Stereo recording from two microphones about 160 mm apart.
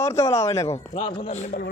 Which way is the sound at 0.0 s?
20° left (ahead or behind).